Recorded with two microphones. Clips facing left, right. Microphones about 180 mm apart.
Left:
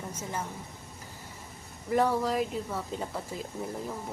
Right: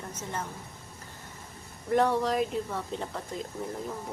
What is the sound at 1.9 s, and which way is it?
Speech, centre (ahead or behind).